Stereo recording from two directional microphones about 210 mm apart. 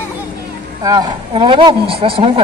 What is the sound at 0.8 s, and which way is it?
Speech, 20° right (ahead or behind).